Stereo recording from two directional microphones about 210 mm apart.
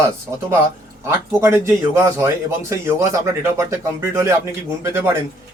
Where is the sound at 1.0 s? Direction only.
10° right (ahead or behind).